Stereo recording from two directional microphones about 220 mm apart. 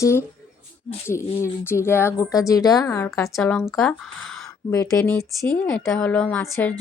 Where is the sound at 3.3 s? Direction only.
5° left (ahead or behind).